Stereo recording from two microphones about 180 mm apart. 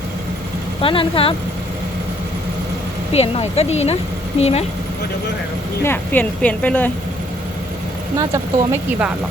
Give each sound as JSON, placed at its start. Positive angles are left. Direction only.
{"t": 0.8, "sound": "speech", "side_deg": 30}
{"t": 3.1, "sound": "speech", "side_deg": 35}
{"t": 5.8, "sound": "speech", "side_deg": 10}
{"t": 8.1, "sound": "speech", "side_deg": -20}